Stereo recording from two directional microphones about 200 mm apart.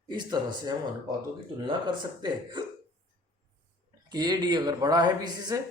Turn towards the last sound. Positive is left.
turn(degrees=-20)  # may be behind; listen again after turning